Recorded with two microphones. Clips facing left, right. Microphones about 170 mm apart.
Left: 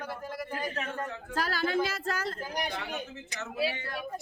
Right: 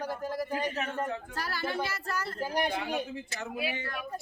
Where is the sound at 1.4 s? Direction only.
90° left.